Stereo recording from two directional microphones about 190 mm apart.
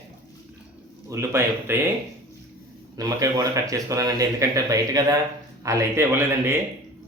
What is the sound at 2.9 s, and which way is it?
Speech, 20° right (ahead or behind).